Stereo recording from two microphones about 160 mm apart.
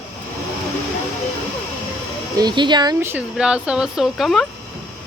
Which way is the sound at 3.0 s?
10° right (ahead or behind).